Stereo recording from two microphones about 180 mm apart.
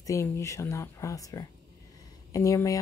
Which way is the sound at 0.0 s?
15° left (ahead or behind).